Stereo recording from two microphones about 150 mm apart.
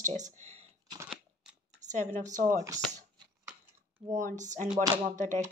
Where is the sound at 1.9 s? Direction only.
55° right (ahead or behind).